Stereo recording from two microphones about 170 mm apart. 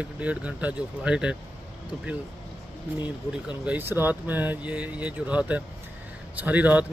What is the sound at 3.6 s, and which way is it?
Speech, 10° right (ahead or behind).